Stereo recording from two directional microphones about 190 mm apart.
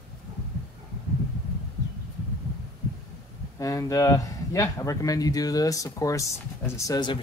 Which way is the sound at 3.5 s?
15° left (ahead or behind).